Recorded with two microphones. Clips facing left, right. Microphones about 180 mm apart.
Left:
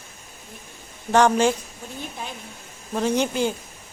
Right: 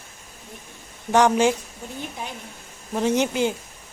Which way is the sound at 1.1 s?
15° right (ahead or behind).